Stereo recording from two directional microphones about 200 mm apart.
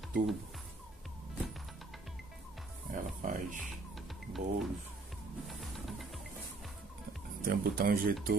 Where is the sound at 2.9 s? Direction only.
40° right (ahead or behind).